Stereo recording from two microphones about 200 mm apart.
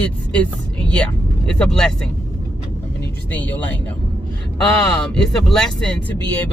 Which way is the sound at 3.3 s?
10° left (ahead or behind).